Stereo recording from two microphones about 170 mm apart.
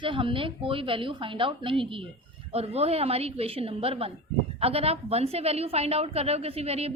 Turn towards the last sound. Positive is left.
turn(degrees=-35)  # may be behind; listen again after turning